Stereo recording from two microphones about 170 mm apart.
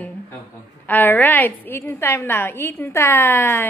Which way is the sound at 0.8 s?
10° left (ahead or behind).